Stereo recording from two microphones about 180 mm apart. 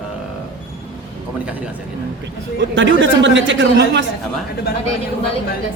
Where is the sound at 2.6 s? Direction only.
90° right.